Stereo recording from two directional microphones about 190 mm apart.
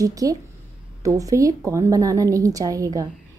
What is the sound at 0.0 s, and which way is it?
A woman's voice, 20° right (ahead or behind).